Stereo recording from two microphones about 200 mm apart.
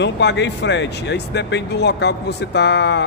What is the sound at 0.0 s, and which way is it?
A man's voice, 60° left (ahead or behind).